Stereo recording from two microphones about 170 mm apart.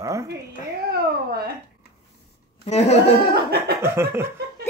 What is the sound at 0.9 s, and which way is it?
Speech, 70° right (ahead or behind).